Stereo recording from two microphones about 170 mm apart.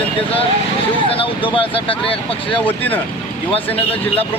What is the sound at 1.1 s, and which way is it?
Speech, 30° left (ahead or behind).